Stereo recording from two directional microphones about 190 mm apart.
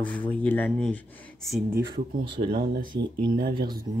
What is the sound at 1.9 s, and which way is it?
Speech, 30° right (ahead or behind).